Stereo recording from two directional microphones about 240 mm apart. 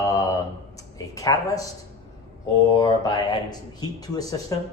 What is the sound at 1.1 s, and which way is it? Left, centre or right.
Speech, centre.